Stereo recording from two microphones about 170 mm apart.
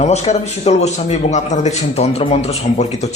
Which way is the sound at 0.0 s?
40° left (ahead or behind).